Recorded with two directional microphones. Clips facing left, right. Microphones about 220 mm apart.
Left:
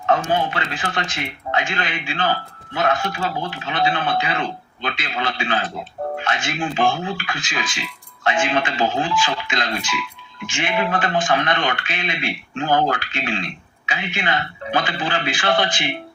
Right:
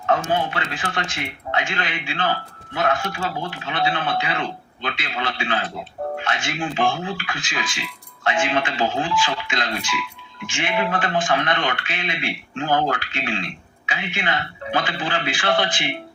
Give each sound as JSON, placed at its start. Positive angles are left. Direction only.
{"t": 0.1, "sound": "speech", "side_deg": 35}